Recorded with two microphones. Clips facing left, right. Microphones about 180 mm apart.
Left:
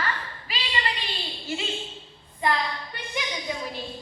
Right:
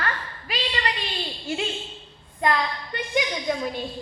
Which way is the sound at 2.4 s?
55° right (ahead or behind).